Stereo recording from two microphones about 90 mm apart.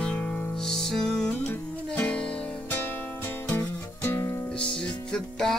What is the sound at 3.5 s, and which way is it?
Music, 25° left (ahead or behind).